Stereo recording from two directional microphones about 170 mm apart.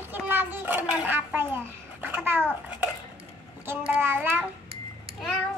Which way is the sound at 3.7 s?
10° right (ahead or behind).